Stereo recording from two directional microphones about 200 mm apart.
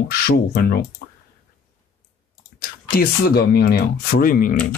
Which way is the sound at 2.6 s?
50° left (ahead or behind).